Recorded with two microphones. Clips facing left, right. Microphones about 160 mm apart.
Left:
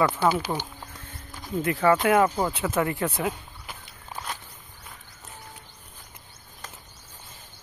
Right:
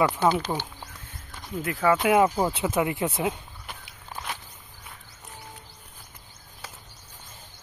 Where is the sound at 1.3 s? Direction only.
Centre (ahead or behind).